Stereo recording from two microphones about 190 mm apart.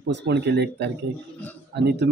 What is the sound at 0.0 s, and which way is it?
Speech, 60° right (ahead or behind).